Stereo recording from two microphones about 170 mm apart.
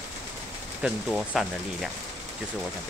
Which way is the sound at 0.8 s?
Centre (ahead or behind).